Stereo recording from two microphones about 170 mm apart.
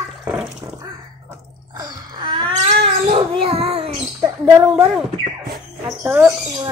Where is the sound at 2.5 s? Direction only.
30° right (ahead or behind).